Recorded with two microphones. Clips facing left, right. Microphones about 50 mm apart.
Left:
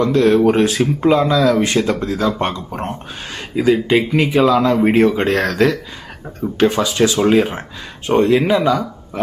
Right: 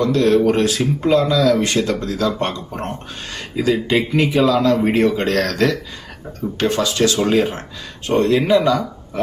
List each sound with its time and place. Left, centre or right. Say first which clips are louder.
0.0 s speech: left 2 dB; centre